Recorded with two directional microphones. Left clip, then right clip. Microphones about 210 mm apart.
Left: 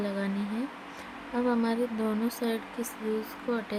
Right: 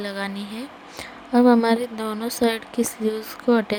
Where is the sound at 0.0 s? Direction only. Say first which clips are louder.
Right 4 dB; 35° right (ahead or behind).